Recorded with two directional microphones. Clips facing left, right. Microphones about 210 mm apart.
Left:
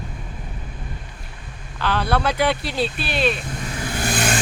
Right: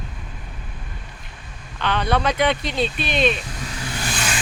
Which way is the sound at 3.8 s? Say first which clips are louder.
Left 5 dB; 55° left (ahead or behind).